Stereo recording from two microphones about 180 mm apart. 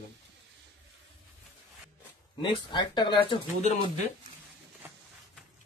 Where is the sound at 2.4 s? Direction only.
25° left (ahead or behind).